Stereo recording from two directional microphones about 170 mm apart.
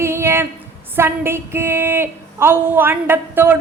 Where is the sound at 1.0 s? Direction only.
15° right (ahead or behind).